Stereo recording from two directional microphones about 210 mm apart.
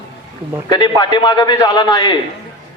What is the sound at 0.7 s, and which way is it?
A man's voice, 20° left (ahead or behind).